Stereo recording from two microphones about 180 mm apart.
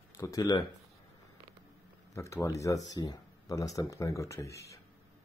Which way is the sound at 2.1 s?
15° left (ahead or behind).